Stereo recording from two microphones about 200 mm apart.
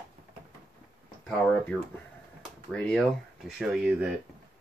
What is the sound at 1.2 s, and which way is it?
Speech, 5° left (ahead or behind).